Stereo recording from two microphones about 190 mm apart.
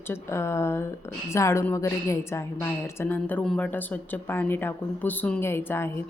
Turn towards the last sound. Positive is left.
turn(degrees=10)  # may be behind; listen again after turning